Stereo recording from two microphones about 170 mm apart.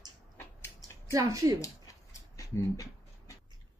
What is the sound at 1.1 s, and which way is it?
Speech, 20° right (ahead or behind).